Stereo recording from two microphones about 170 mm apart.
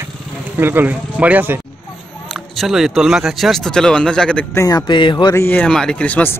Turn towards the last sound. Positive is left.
turn(degrees=10)  # may be behind; listen again after turning